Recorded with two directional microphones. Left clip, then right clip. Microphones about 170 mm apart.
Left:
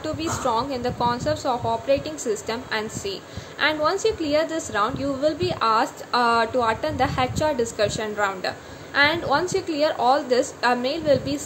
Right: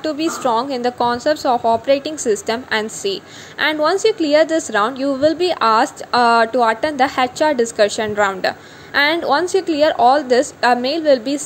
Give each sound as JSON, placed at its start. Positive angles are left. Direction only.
{"t": 0.0, "sound": "a woman's voice", "side_deg": -35}